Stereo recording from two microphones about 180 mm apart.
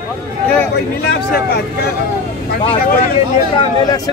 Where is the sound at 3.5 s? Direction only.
20° left (ahead or behind).